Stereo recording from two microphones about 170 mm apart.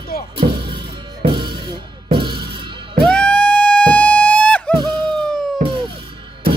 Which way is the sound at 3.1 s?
5° left (ahead or behind).